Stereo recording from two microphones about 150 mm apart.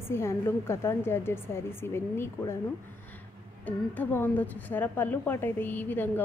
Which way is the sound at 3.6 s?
10° left (ahead or behind).